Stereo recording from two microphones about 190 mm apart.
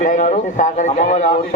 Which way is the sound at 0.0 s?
40° left (ahead or behind).